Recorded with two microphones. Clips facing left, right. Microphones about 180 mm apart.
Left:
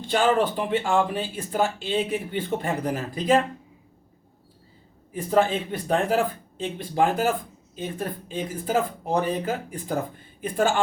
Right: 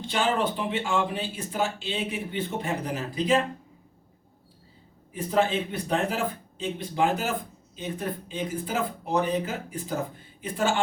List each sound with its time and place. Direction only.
0.1 s speech: 50° left (ahead or behind)
5.1 s speech: 50° left (ahead or behind)